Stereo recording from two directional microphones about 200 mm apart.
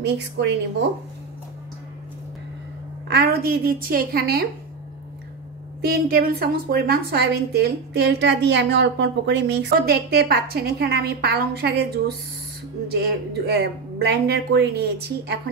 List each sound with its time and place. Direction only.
0.0 s speech: 55° right (ahead or behind)
3.1 s a woman's voice: 50° right (ahead or behind)
5.8 s a woman's voice: 50° right (ahead or behind)